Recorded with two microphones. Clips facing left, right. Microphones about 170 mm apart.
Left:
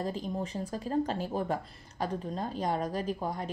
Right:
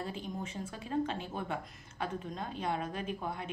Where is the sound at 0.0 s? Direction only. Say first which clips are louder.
Left 6 dB; 35° left (ahead or behind).